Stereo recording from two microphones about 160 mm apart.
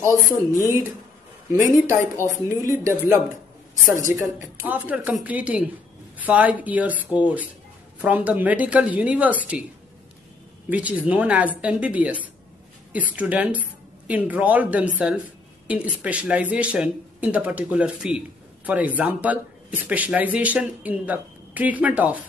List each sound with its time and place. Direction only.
0.1 s speech: 20° left (ahead or behind)
1.5 s a woman's voice: 20° right (ahead or behind)
10.7 s a woman's voice: 10° right (ahead or behind)